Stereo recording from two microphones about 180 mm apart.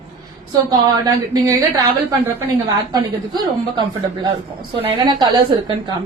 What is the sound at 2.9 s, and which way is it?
A woman's voice, 25° right (ahead or behind).